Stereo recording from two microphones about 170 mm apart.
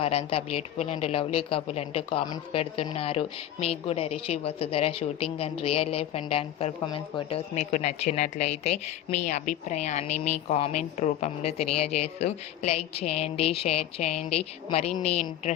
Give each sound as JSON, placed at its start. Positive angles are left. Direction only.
{"t": 0.0, "sound": "a woman's voice", "side_deg": 35}